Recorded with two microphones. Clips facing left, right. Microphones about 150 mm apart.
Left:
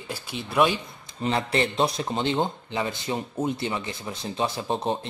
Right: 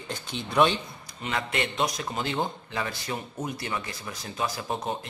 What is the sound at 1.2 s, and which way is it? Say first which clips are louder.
Speech: left 5 dB; 35° left (ahead or behind).